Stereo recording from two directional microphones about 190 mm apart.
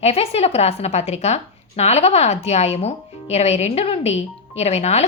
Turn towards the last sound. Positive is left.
turn(degrees=35)  # may be behind; listen again after turning